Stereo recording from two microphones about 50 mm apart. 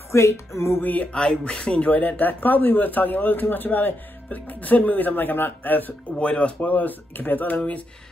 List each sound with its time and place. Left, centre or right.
0.1 s music: left
1.1 s speech: centre
1.6 s speech: left
6.1 s speech: left